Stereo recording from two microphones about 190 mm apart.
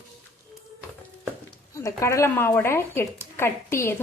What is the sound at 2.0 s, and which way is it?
Speech, 15° left (ahead or behind).